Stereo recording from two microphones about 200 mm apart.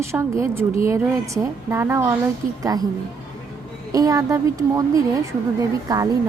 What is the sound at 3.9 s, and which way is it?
A woman's voice, 20° right (ahead or behind).